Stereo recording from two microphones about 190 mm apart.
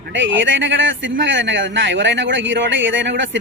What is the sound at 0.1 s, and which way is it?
A man's voice, 85° right.